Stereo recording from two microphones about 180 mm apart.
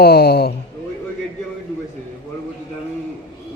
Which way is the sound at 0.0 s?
60° left (ahead or behind).